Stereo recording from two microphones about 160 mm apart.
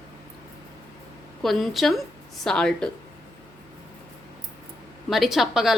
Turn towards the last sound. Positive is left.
turn(degrees=0)  # may be behind; listen again after turning